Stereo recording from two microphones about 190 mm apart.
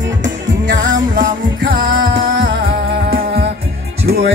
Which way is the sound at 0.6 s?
45° right (ahead or behind).